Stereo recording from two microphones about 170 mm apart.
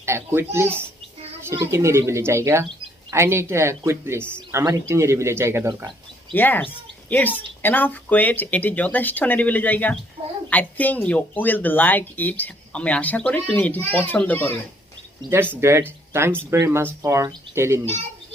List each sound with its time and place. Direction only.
0.0 s speech: 15° right (ahead or behind)
1.7 s speech: 15° right (ahead or behind)
4.2 s speech: 5° left (ahead or behind)
4.5 s speech: 15° right (ahead or behind)
6.3 s speech: 10° left (ahead or behind)
15.3 s speech: 15° right (ahead or behind)